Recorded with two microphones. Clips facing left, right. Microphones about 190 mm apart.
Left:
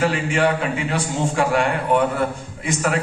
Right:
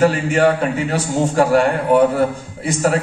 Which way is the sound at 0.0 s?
40° right (ahead or behind).